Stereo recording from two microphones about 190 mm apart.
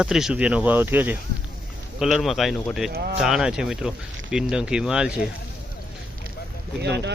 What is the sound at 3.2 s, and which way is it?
Speech, 5° right (ahead or behind).